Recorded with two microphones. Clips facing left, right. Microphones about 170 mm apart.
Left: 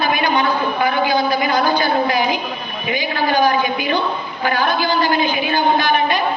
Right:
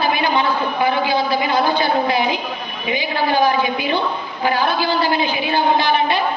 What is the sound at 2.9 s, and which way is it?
A man's voice, 30° right (ahead or behind).